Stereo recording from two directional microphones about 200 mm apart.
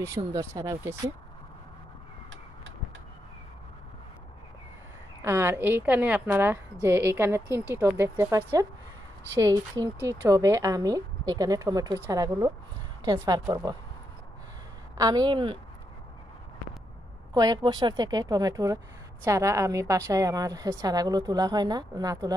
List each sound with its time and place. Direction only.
0.0 s a woman's voice: 15° right (ahead or behind)
5.2 s a woman's voice: 10° right (ahead or behind)
15.0 s a woman's voice: 20° right (ahead or behind)
17.3 s a woman's voice: 20° right (ahead or behind)